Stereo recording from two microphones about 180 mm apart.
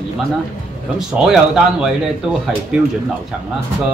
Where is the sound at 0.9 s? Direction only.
Centre (ahead or behind).